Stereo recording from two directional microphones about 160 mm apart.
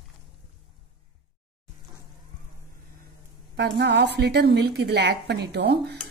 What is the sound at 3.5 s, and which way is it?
A woman's voice, 90° right.